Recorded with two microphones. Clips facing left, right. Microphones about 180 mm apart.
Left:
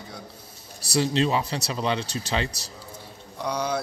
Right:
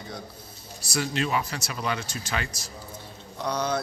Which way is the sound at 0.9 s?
30° left (ahead or behind).